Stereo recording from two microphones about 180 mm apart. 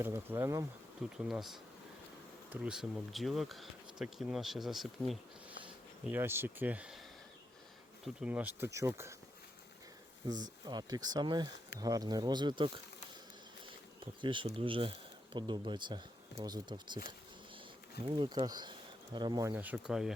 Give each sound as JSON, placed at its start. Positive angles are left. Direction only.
{"t": 0.0, "sound": "speech", "side_deg": -15}
{"t": 1.1, "sound": "speech", "side_deg": -5}
{"t": 6.1, "sound": "speech", "side_deg": -10}
{"t": 8.0, "sound": "speech", "side_deg": -5}
{"t": 10.2, "sound": "speech", "side_deg": -25}
{"t": 18.2, "sound": "speech", "side_deg": -25}